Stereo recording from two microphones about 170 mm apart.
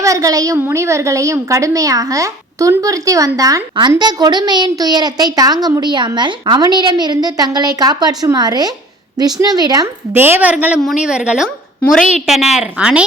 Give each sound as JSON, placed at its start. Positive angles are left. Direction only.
{"t": 0.0, "sound": "a woman's voice", "side_deg": -20}
{"t": 11.8, "sound": "a woman's voice", "side_deg": 5}